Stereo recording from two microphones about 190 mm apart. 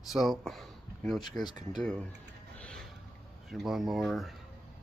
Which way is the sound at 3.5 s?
Centre (ahead or behind).